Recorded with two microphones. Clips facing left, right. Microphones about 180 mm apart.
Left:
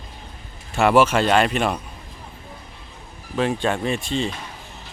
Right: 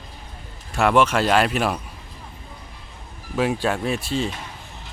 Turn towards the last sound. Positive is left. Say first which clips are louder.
# even
turn(degrees=-5)  # may be behind; listen again after turning